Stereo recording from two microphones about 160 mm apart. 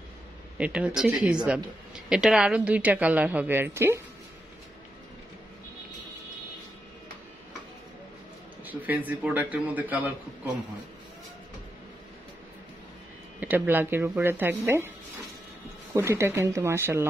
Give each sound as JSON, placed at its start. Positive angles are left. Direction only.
{"t": 0.6, "sound": "a woman's voice", "side_deg": -10}
{"t": 8.6, "sound": "a woman's voice", "side_deg": -10}
{"t": 13.4, "sound": "a woman's voice", "side_deg": -10}